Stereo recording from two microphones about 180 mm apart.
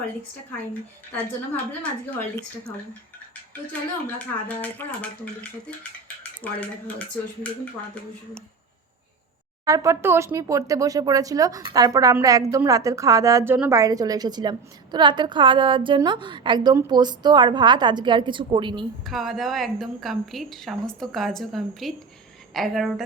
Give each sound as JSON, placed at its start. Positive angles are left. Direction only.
{"t": 1.8, "sound": "speech", "side_deg": 10}
{"t": 4.2, "sound": "speech", "side_deg": 10}
{"t": 9.6, "sound": "speech", "side_deg": -15}
{"t": 19.0, "sound": "a woman's voice", "side_deg": 0}